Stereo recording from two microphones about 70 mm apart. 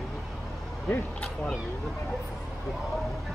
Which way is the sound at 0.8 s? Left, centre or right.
Left.